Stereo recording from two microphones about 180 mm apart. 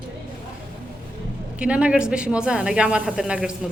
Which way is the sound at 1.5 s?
5° right (ahead or behind).